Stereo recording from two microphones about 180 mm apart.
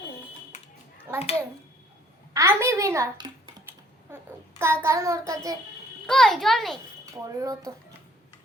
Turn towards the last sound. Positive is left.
turn(degrees=-20)  # may be behind; listen again after turning